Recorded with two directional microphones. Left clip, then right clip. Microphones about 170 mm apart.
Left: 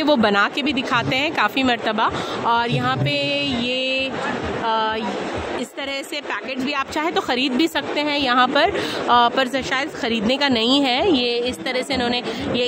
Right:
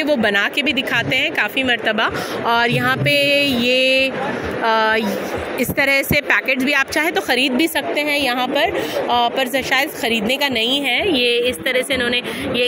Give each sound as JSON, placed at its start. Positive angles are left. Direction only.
{"t": 3.1, "sound": "a sound", "side_deg": 50}
{"t": 4.7, "sound": "speech", "side_deg": -15}
{"t": 8.6, "sound": "speech", "side_deg": 35}
{"t": 10.0, "sound": "a woman's voice", "side_deg": 90}
{"t": 10.6, "sound": "a woman's voice", "side_deg": 35}